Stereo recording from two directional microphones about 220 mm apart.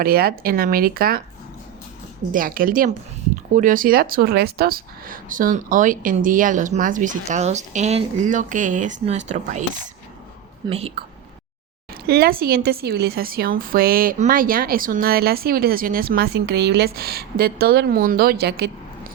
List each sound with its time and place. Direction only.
0.0 s a woman's voice: 45° right (ahead or behind)
2.3 s a woman's voice: 40° right (ahead or behind)
12.0 s a woman's voice: 45° right (ahead or behind)